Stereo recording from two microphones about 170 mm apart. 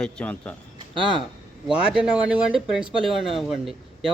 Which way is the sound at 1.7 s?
5° right (ahead or behind).